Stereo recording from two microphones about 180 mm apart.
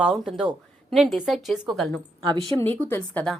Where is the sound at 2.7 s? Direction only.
10° left (ahead or behind).